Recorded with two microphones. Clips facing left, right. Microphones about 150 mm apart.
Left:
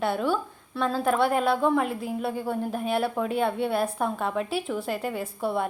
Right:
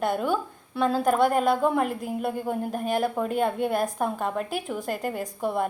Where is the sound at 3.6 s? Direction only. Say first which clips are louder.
Even; 45° right (ahead or behind).